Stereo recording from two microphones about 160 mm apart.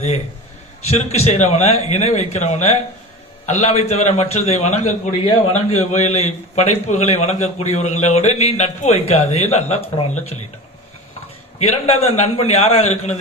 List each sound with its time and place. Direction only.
0.9 s a man's voice: 40° left (ahead or behind)
11.6 s a man's voice: 40° left (ahead or behind)